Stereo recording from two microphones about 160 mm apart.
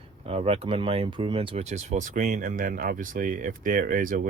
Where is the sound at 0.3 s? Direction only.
35° right (ahead or behind).